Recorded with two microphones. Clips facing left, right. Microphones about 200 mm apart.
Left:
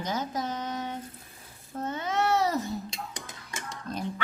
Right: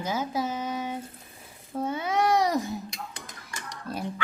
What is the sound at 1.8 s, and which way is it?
Babbling, 10° right (ahead or behind).